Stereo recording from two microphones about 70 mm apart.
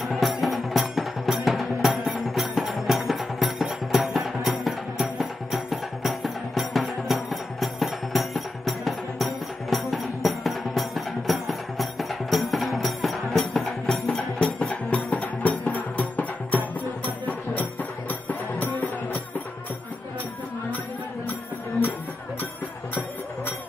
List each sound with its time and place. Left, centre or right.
0.0 s music: centre
13.9 s music: centre
18.3 s music: left